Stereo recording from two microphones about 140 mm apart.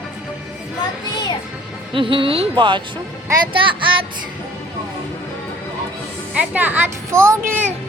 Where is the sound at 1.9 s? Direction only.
40° right (ahead or behind).